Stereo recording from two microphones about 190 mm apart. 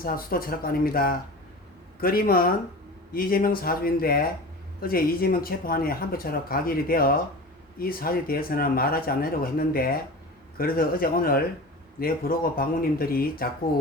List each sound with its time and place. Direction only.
0.0 s speech: 50° left (ahead or behind)